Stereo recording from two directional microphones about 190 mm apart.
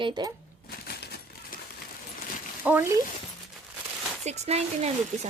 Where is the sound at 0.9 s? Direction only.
55° left (ahead or behind).